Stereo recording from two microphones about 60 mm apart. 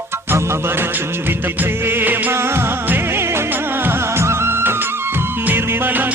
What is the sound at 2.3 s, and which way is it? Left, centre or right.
Music, right.